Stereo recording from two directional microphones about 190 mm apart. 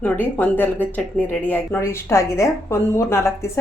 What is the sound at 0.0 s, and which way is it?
A woman's voice, 10° left (ahead or behind).